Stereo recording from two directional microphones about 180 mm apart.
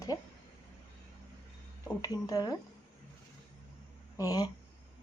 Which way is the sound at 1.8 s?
20° left (ahead or behind).